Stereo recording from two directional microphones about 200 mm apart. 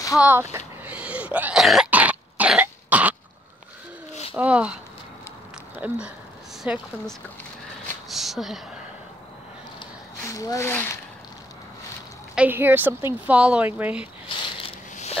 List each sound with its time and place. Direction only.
0.2 s throat clearing: 10° right (ahead or behind)
4.1 s a sound: 30° left (ahead or behind)
4.4 s a woman's voice: 5° right (ahead or behind)
5.8 s speech: 5° right (ahead or behind)
8.1 s a sound: centre (ahead or behind)
10.4 s speech: 15° left (ahead or behind)
12.4 s a woman's voice: 10° right (ahead or behind)